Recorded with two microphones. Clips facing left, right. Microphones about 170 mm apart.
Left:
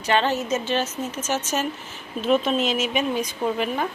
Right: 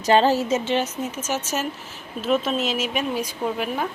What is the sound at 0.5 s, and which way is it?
Speech, 20° right (ahead or behind).